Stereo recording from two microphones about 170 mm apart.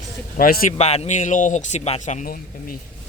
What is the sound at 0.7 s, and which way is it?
Speech, 40° left (ahead or behind).